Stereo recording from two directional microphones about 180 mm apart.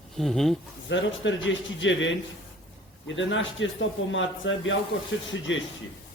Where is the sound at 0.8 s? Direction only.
90° left.